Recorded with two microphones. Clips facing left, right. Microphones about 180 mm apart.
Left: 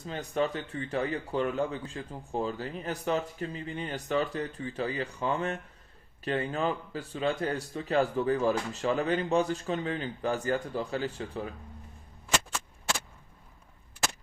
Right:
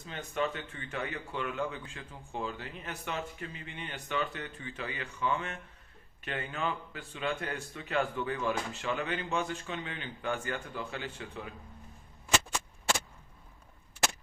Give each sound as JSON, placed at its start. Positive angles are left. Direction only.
{"t": 0.1, "sound": "speech", "side_deg": 35}